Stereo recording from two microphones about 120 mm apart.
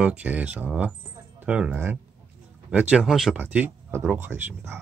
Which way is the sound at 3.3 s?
15° right (ahead or behind).